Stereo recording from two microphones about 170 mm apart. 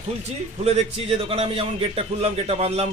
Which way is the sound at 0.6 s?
35° right (ahead or behind).